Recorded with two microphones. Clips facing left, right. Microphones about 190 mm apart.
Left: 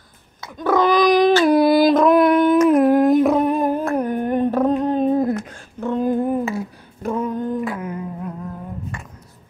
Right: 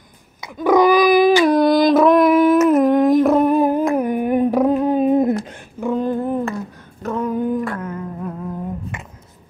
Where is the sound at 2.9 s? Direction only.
Centre (ahead or behind).